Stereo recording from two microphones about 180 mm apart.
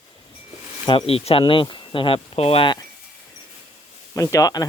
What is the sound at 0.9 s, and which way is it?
Speech, 30° left (ahead or behind).